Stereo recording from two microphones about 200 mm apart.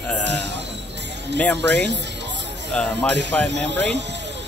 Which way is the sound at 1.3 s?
5° left (ahead or behind).